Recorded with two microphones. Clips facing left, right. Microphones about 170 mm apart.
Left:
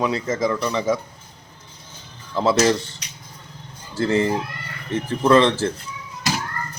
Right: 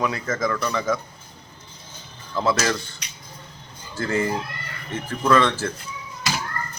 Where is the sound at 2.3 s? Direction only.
30° left (ahead or behind).